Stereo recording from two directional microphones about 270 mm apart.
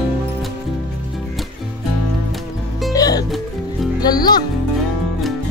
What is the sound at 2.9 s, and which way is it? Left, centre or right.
Music, centre.